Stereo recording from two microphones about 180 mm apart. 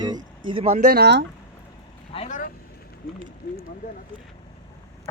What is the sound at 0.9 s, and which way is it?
Speech, 65° right (ahead or behind).